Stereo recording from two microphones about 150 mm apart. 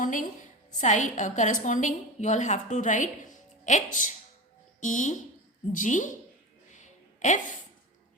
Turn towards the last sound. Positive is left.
turn(degrees=55)  # may be behind; listen again after turning